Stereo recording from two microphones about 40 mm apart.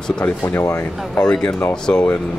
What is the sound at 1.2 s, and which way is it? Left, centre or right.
Speech, left.